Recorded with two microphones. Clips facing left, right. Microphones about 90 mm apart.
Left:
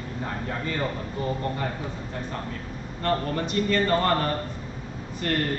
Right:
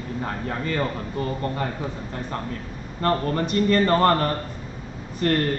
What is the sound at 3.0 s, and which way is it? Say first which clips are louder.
A man's voice: right 3 dB; 45° right (ahead or behind).